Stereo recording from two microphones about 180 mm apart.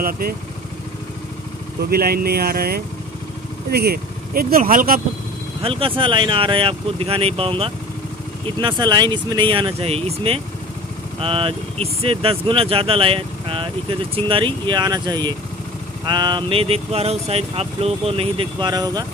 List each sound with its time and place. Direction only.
1.8 s speech: 60° right (ahead or behind)
5.6 s speech: 30° right (ahead or behind)